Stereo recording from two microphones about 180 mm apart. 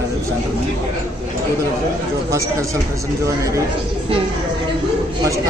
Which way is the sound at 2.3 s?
15° right (ahead or behind).